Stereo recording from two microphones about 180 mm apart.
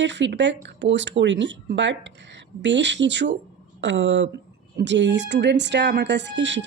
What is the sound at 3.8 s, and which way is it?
A woman's voice, 90° right.